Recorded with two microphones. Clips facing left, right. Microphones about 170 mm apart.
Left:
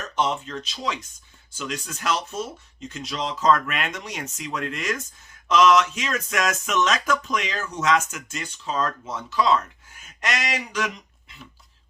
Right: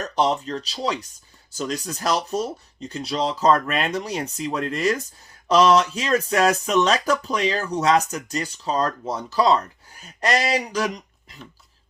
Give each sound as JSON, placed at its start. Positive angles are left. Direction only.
{"t": 0.0, "sound": "speech", "side_deg": -35}